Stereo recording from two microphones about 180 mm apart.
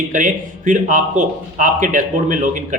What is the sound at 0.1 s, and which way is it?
A man's voice, 45° right (ahead or behind).